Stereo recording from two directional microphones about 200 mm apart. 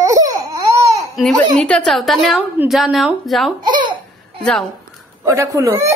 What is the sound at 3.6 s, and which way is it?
Baby laughter, 25° right (ahead or behind).